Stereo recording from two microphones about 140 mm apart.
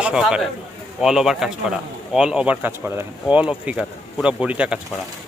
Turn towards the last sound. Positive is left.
turn(degrees=-5)  # may be behind; listen again after turning